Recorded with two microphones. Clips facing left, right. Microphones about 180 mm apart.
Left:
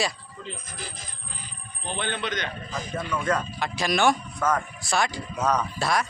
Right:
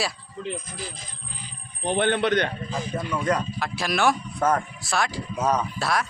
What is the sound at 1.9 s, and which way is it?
Speech, 60° right (ahead or behind).